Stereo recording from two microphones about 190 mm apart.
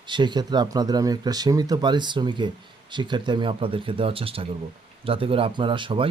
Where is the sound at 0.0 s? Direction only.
25° right (ahead or behind).